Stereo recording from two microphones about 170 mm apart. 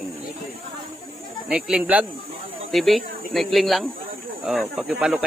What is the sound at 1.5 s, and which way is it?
Speech, 5° right (ahead or behind).